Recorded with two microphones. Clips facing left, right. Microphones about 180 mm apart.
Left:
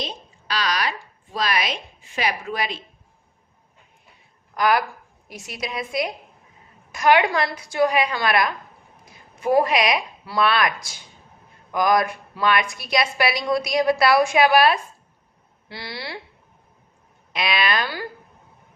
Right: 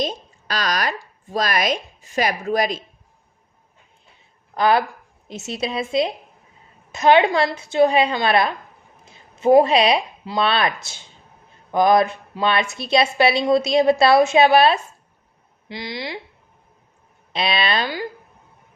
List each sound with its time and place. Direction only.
0.0 s speech: 45° right (ahead or behind)
4.5 s a woman's voice: 30° right (ahead or behind)
17.3 s a woman's voice: 30° right (ahead or behind)